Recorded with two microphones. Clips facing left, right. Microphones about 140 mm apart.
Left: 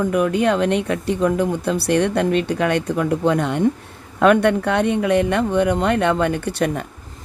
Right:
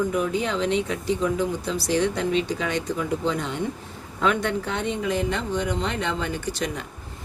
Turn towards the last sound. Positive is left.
turn(degrees=55)  # may be behind; listen again after turning